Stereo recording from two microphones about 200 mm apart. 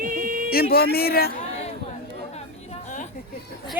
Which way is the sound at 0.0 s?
45° right (ahead or behind).